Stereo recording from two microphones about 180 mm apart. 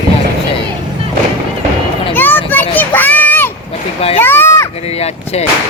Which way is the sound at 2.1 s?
10° left (ahead or behind).